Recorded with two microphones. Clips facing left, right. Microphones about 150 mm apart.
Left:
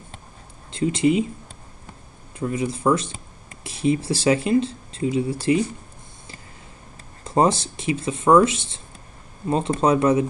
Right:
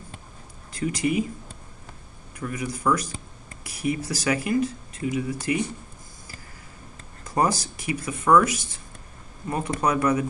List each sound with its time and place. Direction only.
0.7 s speech: 25° left (ahead or behind)
2.3 s speech: 25° left (ahead or behind)
7.2 s speech: 25° left (ahead or behind)